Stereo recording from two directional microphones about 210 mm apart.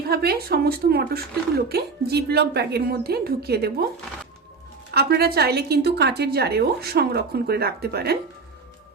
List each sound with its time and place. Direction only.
0.1 s speech: 50° right (ahead or behind)
4.9 s speech: 50° right (ahead or behind)